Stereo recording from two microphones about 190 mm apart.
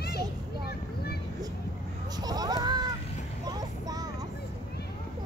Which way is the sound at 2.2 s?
20° right (ahead or behind).